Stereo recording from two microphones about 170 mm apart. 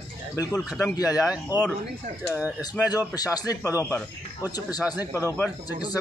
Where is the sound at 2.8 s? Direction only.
20° left (ahead or behind).